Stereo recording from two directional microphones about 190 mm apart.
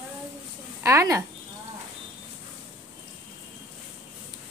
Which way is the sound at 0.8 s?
15° right (ahead or behind).